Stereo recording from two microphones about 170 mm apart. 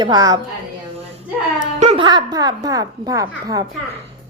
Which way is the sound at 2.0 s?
25° right (ahead or behind).